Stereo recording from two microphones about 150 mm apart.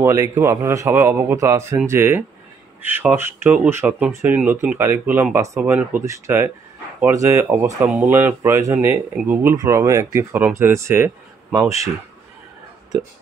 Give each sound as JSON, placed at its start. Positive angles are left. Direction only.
{"t": 0.0, "sound": "speech", "side_deg": -20}